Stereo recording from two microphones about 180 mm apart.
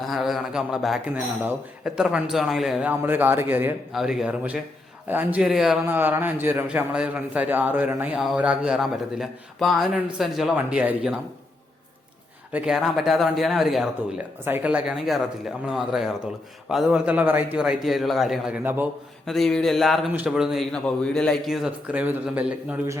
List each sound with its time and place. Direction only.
0.0 s a man's voice: centre (ahead or behind)
12.5 s speech: 5° right (ahead or behind)
19.2 s speech: centre (ahead or behind)